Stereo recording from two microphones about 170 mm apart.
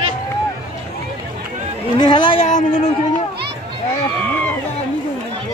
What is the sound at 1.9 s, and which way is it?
Speech, 25° left (ahead or behind).